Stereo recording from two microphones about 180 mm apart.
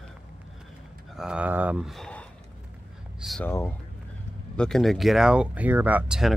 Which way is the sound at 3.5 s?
10° left (ahead or behind).